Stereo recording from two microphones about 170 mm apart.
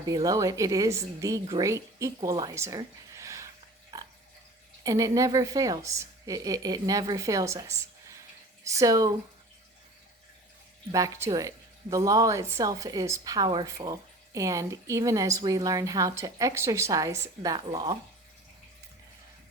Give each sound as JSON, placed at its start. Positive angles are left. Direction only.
{"t": 0.0, "sound": "speech", "side_deg": -20}
{"t": 3.9, "sound": "pig", "side_deg": -20}
{"t": 4.8, "sound": "speech", "side_deg": -20}
{"t": 10.9, "sound": "speech", "side_deg": -20}